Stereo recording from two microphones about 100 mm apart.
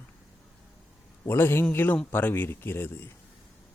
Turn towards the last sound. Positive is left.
turn(degrees=20)  # may be behind; listen again after turning